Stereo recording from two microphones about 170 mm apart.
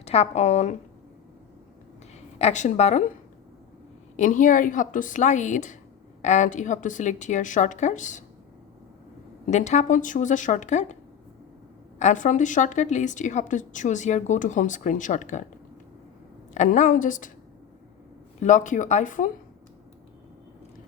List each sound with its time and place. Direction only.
0.0 s a woman's voice: 40° left (ahead or behind)
2.4 s a woman's voice: 45° left (ahead or behind)
4.2 s a woman's voice: 50° left (ahead or behind)
9.5 s a woman's voice: 45° left (ahead or behind)
11.9 s a woman's voice: 45° left (ahead or behind)
16.6 s a woman's voice: 45° left (ahead or behind)
18.3 s a woman's voice: 45° left (ahead or behind)